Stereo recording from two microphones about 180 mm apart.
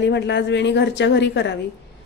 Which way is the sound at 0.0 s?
75° left (ahead or behind).